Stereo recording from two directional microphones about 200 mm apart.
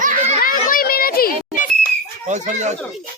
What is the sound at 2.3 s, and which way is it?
Speech, 35° right (ahead or behind).